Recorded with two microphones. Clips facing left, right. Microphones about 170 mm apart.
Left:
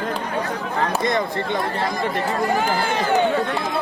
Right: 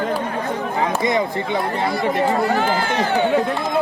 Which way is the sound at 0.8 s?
10° right (ahead or behind).